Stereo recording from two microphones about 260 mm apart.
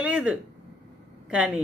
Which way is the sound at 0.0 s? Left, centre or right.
Centre.